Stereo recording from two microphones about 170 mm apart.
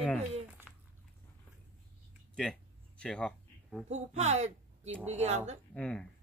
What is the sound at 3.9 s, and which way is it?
A woman's voice, 40° right (ahead or behind).